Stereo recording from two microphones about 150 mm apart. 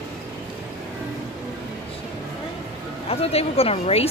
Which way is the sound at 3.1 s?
40° left (ahead or behind).